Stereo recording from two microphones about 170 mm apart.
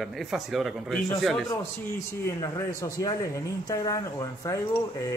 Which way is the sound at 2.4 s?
20° left (ahead or behind).